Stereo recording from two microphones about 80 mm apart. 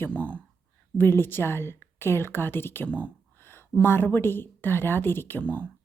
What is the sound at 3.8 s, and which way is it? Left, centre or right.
A woman's voice, left.